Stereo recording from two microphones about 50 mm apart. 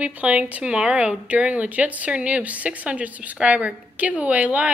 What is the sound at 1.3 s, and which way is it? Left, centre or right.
A woman's voice, right.